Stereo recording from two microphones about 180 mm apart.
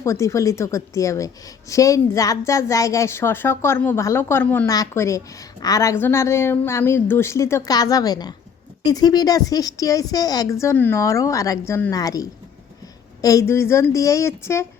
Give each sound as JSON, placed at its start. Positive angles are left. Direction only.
{"t": 0.0, "sound": "a woman's voice", "side_deg": 15}